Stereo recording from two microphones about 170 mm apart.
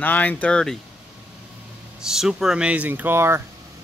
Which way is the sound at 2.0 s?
5° right (ahead or behind).